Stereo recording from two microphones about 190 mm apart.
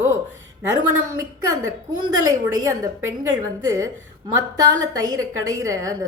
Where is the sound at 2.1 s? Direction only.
20° right (ahead or behind).